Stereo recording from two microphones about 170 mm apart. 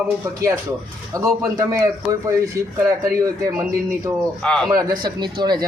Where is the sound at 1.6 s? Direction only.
20° right (ahead or behind).